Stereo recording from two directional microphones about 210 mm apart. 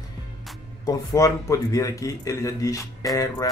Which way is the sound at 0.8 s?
15° left (ahead or behind).